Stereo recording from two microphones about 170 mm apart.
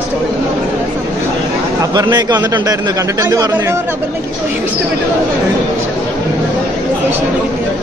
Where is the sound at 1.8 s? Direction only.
25° right (ahead or behind).